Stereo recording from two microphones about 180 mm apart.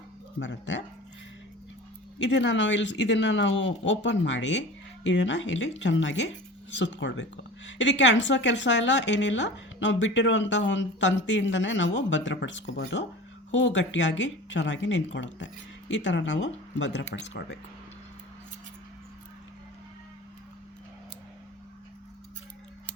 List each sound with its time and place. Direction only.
0.3 s speech: 85° left
2.1 s speech: 85° left